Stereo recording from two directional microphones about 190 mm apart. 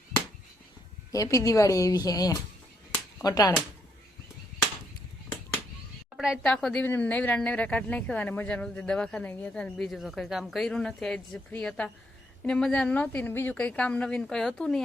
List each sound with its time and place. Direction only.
1.1 s a woman's voice: 15° left (ahead or behind)
6.1 s speech: centre (ahead or behind)